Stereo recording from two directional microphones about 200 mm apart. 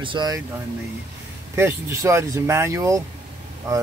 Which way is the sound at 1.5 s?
15° right (ahead or behind).